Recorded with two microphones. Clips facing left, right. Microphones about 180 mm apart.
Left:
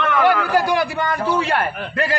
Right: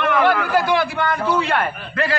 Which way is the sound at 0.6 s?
40° left (ahead or behind).